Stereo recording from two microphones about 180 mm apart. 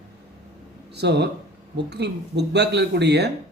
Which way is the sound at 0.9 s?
70° right (ahead or behind).